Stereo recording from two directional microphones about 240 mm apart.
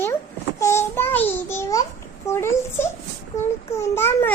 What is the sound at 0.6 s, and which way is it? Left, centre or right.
Babbling, centre.